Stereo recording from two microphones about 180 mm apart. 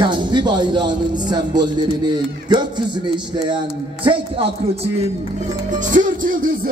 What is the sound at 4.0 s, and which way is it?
Speech, 30° right (ahead or behind).